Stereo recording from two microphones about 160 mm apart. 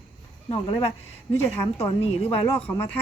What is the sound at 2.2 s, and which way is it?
Speech, 10° left (ahead or behind).